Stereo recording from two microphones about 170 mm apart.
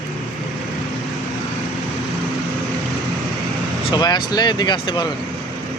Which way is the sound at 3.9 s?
25° left (ahead or behind).